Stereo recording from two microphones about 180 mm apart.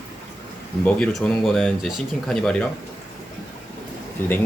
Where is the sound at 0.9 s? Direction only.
5° left (ahead or behind).